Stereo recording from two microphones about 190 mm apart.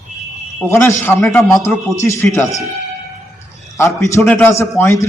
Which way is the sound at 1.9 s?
15° left (ahead or behind).